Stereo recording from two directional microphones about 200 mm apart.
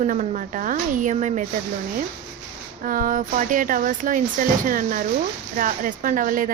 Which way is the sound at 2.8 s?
45° right (ahead or behind).